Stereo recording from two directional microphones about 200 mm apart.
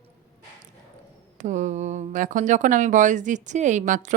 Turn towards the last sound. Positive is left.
turn(degrees=-40)  # may be behind; listen again after turning